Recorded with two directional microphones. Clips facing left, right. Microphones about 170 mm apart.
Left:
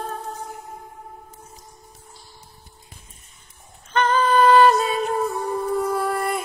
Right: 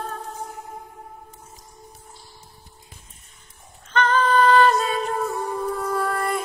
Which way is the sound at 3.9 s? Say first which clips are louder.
Left 1 dB; 10° left (ahead or behind).